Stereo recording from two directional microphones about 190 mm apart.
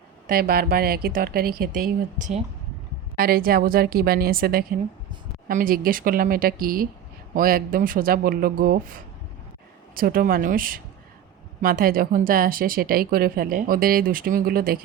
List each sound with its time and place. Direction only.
0.3 s a woman's voice: 50° right (ahead or behind)